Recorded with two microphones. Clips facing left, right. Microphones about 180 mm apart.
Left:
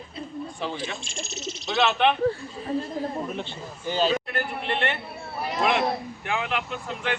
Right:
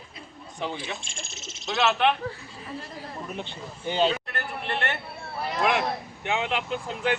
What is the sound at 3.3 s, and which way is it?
Speech, 20° right (ahead or behind).